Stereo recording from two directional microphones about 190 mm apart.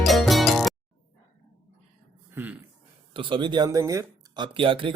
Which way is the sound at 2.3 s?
10° right (ahead or behind).